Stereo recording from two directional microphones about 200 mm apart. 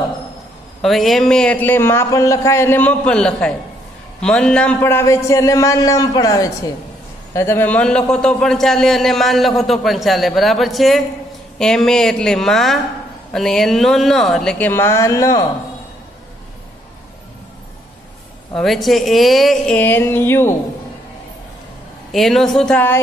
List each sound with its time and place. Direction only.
0.8 s a man's voice: centre (ahead or behind)
18.5 s a man's voice: centre (ahead or behind)
22.1 s a man's voice: centre (ahead or behind)